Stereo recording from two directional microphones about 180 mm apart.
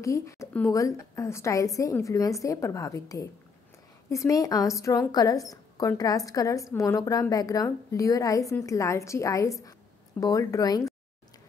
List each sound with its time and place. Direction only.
0.0 s a woman's voice: 15° left (ahead or behind)